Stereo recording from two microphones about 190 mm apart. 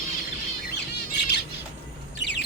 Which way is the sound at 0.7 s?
60° left (ahead or behind).